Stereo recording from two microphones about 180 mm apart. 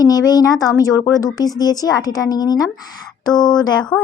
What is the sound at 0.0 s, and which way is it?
Speech, 20° left (ahead or behind).